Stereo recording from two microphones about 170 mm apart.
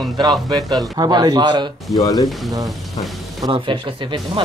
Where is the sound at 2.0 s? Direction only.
20° left (ahead or behind).